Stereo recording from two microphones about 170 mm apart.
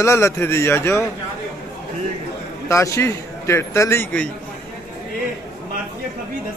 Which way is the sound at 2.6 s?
15° left (ahead or behind).